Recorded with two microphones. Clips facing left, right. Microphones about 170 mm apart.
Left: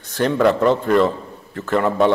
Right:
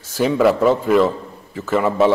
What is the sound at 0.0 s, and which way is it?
A man's voice, 5° right (ahead or behind).